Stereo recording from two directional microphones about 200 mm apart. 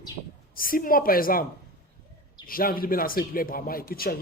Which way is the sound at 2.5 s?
45° left (ahead or behind).